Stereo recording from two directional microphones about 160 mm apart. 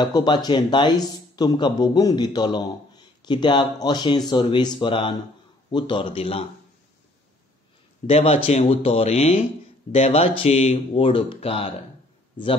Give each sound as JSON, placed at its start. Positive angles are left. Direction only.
{"t": 0.0, "sound": "speech", "side_deg": 25}
{"t": 8.1, "sound": "speech", "side_deg": 40}